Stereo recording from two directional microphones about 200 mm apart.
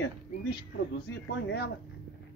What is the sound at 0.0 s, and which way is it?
Speech, 55° left (ahead or behind).